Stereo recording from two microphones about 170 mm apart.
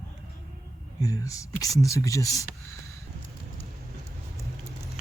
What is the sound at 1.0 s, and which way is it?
Speech, 20° left (ahead or behind).